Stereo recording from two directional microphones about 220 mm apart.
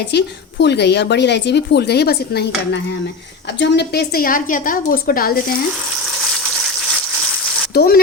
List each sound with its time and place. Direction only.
0.1 s a woman's voice: 50° left (ahead or behind)
3.6 s a woman's voice: 50° left (ahead or behind)
7.7 s speech: 45° left (ahead or behind)